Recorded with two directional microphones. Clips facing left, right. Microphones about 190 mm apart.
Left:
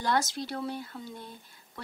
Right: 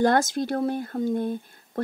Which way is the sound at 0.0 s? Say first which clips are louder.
Right 9 dB; 50° right (ahead or behind).